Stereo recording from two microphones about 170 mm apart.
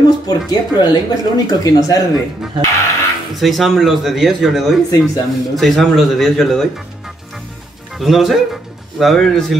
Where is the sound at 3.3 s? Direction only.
Centre (ahead or behind).